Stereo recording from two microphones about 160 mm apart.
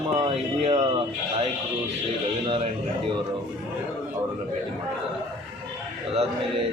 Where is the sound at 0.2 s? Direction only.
35° right (ahead or behind).